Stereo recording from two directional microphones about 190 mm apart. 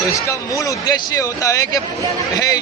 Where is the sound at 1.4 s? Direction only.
15° left (ahead or behind).